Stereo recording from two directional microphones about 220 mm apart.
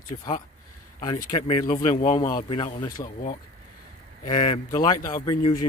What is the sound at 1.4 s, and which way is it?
Speech, 30° left (ahead or behind).